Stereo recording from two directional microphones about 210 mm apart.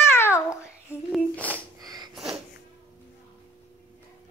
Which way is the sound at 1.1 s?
5° left (ahead or behind).